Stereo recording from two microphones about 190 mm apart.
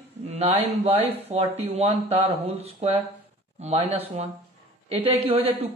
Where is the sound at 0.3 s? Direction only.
30° right (ahead or behind).